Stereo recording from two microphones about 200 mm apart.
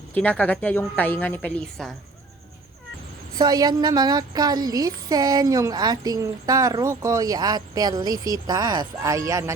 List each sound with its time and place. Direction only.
0.1 s a woman's voice: 10° left (ahead or behind)
3.3 s a woman's voice: 20° right (ahead or behind)